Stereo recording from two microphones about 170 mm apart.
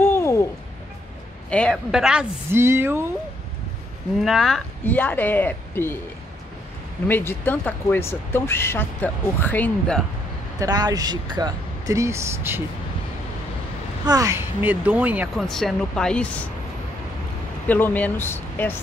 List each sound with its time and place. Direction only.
0.0 s a sound: 15° left (ahead or behind)
1.5 s a woman's voice: 5° left (ahead or behind); by 3.1 s 15° right (ahead or behind)
4.2 s speech: centre (ahead or behind)
7.1 s speech: 10° left (ahead or behind)
10.6 s speech: 25° right (ahead or behind)
14.0 s speech: 20° right (ahead or behind)
15.4 s a woman's voice: centre (ahead or behind)
17.6 s speech: 10° left (ahead or behind)